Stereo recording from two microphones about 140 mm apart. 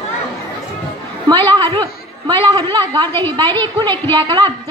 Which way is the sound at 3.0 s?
15° left (ahead or behind).